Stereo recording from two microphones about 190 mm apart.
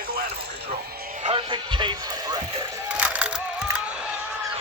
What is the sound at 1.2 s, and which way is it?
Speech, 30° right (ahead or behind).